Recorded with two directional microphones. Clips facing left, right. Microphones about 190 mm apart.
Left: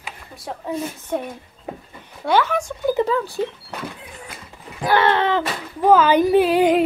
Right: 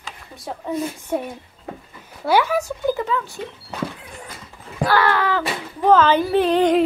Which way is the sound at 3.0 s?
35° left (ahead or behind).